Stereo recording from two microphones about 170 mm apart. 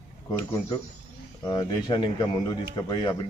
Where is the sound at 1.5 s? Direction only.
25° left (ahead or behind).